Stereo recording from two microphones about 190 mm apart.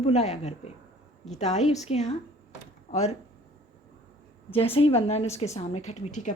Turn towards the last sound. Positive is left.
turn(degrees=40)  # may be behind; listen again after turning